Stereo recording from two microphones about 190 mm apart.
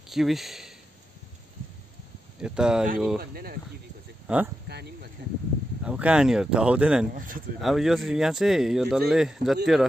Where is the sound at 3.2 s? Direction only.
55° right (ahead or behind).